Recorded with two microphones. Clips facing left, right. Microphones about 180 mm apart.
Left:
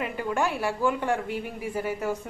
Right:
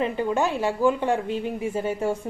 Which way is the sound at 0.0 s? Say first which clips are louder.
Right 4 dB; 20° right (ahead or behind).